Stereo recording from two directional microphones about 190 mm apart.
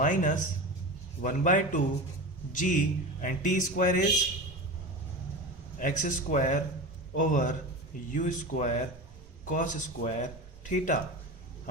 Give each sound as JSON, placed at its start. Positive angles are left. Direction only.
{"t": 0.0, "sound": "speech", "side_deg": 40}
{"t": 5.8, "sound": "speech", "side_deg": 45}